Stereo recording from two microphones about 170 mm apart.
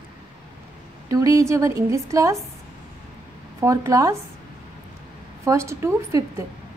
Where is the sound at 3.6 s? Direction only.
20° right (ahead or behind).